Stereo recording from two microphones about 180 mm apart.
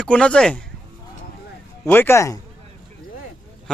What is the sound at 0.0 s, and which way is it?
Speech, 5° left (ahead or behind).